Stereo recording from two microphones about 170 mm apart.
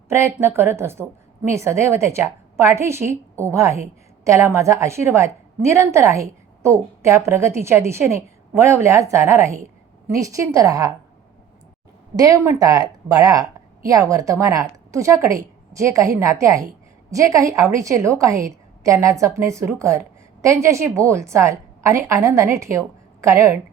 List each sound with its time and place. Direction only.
0.1 s a woman's voice: 15° right (ahead or behind)
12.1 s a woman's voice: 20° right (ahead or behind)